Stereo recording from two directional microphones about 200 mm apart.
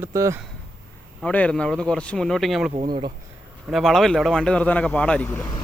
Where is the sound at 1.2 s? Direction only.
5° left (ahead or behind).